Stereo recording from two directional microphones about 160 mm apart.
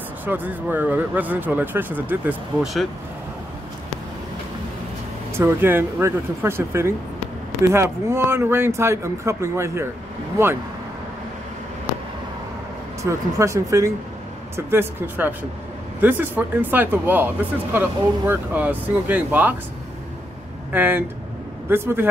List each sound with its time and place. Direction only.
0.2 s speech: 10° right (ahead or behind)
5.4 s speech: 15° right (ahead or behind)
13.0 s speech: 20° right (ahead or behind)
20.7 s speech: 10° right (ahead or behind)